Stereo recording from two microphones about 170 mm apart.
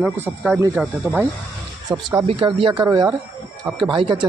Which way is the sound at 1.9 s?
25° right (ahead or behind).